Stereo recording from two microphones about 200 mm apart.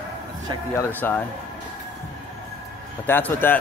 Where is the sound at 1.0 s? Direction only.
10° left (ahead or behind).